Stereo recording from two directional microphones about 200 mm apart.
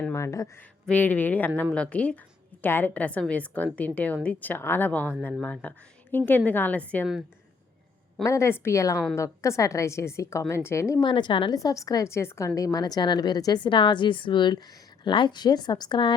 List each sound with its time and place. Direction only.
0.0 s a woman's voice: 15° left (ahead or behind)
8.2 s a woman's voice: 15° left (ahead or behind)